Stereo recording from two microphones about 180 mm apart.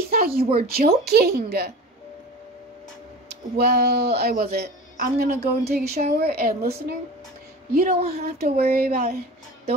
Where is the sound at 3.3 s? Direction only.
65° right (ahead or behind).